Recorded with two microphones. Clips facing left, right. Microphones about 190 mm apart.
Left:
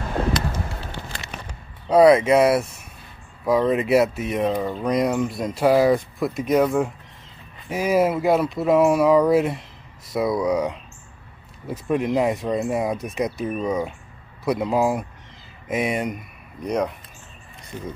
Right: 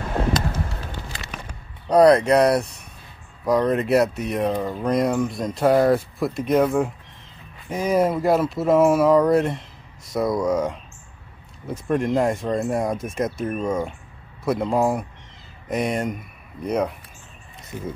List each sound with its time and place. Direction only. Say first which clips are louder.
1.9 s speech: even; 5° left (ahead or behind)